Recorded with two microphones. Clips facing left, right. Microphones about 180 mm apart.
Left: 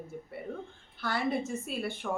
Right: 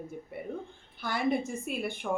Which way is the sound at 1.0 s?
15° right (ahead or behind).